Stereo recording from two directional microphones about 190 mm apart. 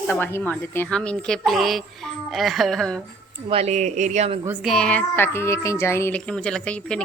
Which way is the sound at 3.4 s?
30° right (ahead or behind).